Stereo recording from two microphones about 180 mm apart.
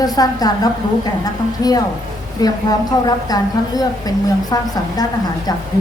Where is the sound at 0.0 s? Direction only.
20° left (ahead or behind).